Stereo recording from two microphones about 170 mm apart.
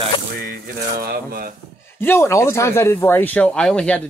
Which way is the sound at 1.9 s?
15° left (ahead or behind).